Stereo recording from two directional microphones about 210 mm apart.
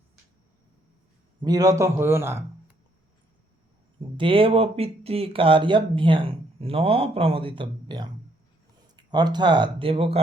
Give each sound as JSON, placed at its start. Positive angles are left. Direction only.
{"t": 1.4, "sound": "a man's voice", "side_deg": -20}
{"t": 4.2, "sound": "speech", "side_deg": -25}